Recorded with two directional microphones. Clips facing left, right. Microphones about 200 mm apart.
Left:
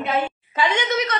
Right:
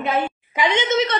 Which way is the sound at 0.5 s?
20° right (ahead or behind).